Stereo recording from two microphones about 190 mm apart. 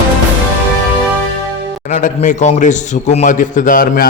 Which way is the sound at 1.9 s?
45° left (ahead or behind).